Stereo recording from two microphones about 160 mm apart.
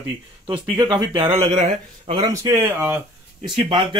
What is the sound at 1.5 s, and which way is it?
Speech, 50° right (ahead or behind).